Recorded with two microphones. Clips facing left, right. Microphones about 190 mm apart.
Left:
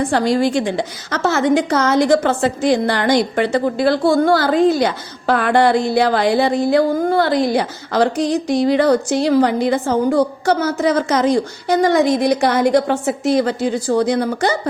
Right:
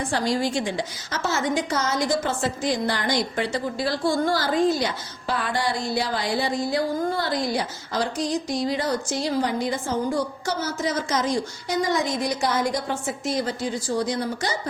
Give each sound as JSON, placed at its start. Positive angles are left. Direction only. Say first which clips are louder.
{"t": 0.0, "sound": "a woman's voice", "louder": "left 8 dB", "side_deg": 60}